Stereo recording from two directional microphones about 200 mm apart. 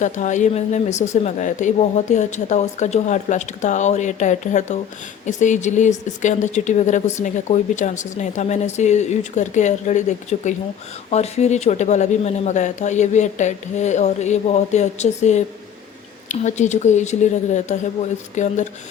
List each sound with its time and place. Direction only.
0.0 s speech: 40° left (ahead or behind)